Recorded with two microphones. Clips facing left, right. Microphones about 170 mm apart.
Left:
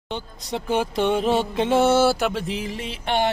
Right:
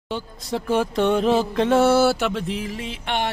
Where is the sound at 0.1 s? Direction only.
Centre (ahead or behind).